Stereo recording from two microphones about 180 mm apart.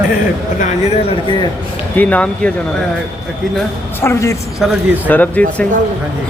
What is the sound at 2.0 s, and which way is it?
Speech, 5° left (ahead or behind).